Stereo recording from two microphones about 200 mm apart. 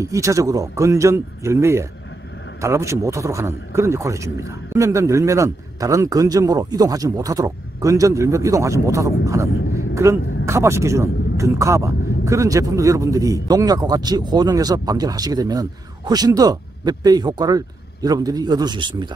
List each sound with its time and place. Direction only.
0.0 s a man's voice: 15° right (ahead or behind)